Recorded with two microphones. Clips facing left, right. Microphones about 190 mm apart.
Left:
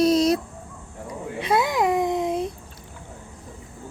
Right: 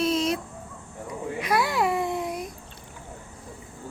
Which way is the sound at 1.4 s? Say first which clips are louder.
Left 3 dB; 25° left (ahead or behind).